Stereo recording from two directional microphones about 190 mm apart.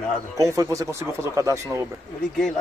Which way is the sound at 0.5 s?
15° right (ahead or behind).